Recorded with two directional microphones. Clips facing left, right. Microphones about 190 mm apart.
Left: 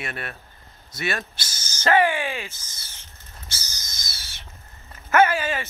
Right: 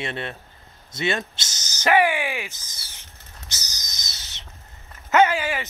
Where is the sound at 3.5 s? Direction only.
20° right (ahead or behind).